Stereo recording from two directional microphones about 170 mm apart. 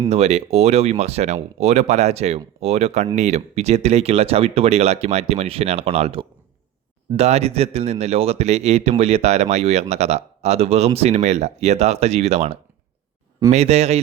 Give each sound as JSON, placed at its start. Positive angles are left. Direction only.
{"t": 0.1, "sound": "speech", "side_deg": -40}